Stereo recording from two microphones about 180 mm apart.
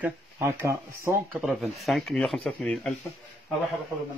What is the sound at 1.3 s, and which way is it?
Speech, centre (ahead or behind).